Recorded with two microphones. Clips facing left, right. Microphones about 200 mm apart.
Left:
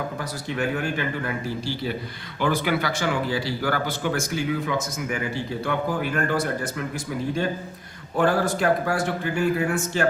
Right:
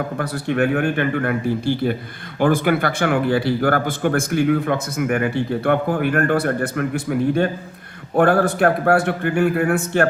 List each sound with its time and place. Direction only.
0.2 s speech: 60° right (ahead or behind)